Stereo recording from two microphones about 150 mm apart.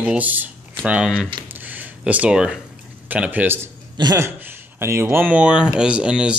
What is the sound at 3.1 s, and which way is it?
Speech, 10° right (ahead or behind).